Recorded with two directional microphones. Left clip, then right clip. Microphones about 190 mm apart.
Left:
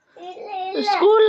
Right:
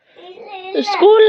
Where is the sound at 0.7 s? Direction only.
10° right (ahead or behind).